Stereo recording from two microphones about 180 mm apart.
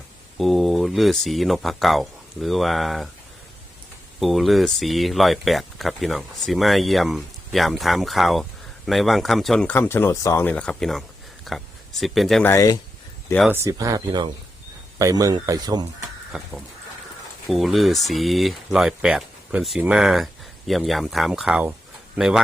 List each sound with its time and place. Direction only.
0.3 s speech: centre (ahead or behind)
4.2 s speech: centre (ahead or behind)
12.4 s speech: 15° left (ahead or behind)
13.7 s speech: 20° right (ahead or behind)
16.3 s speech: 5° right (ahead or behind)